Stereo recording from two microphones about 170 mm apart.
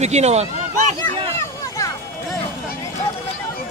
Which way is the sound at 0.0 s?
40° right (ahead or behind).